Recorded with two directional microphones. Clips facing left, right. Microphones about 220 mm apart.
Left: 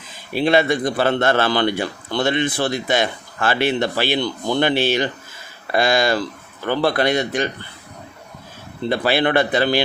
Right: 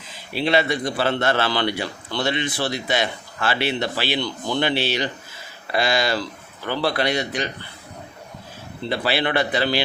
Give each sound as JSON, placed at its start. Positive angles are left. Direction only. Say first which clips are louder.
{"t": 0.3, "sound": "a man's voice", "louder": "left 4 dB", "side_deg": 50}
{"t": 8.9, "sound": "a man's voice", "louder": "left 4 dB", "side_deg": 50}